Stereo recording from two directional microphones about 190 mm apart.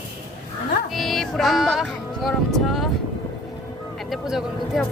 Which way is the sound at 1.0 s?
Centre (ahead or behind).